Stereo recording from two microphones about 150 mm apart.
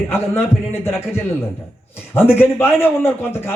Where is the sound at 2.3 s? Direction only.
15° left (ahead or behind).